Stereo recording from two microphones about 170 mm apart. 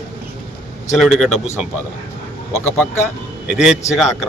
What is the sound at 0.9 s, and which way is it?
Speech, centre (ahead or behind).